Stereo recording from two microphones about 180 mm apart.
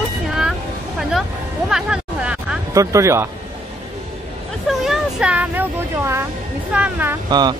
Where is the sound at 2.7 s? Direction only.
15° right (ahead or behind).